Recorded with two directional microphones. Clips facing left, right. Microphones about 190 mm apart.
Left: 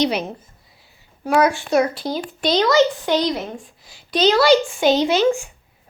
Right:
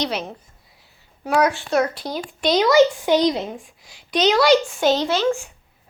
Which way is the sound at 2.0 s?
Centre (ahead or behind).